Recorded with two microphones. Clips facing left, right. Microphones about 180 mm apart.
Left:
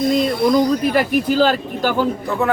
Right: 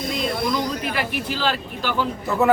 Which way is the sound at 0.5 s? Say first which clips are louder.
Left 9 dB; 45° left (ahead or behind).